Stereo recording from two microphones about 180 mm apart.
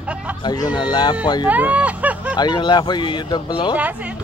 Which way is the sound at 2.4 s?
25° left (ahead or behind).